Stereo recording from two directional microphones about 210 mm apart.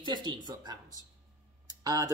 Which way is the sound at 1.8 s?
15° right (ahead or behind).